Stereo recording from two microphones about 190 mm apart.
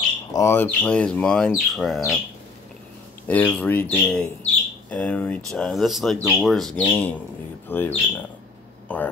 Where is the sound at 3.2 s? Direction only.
5° left (ahead or behind).